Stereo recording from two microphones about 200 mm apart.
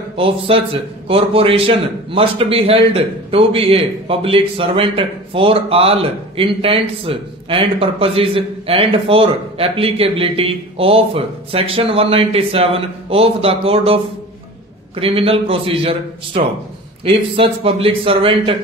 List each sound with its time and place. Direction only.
0.5 s a man's voice: 25° right (ahead or behind)
15.0 s a man's voice: 30° right (ahead or behind)